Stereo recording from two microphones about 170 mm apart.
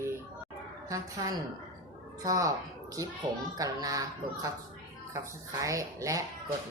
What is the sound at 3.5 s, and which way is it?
Speech, 20° right (ahead or behind).